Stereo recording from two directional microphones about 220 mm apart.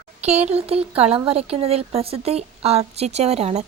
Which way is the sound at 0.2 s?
30° right (ahead or behind).